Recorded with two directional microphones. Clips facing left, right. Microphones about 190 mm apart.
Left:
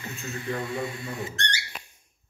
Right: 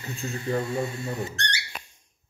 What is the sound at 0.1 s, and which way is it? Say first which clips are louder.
Speech: right 5 dB; 35° right (ahead or behind).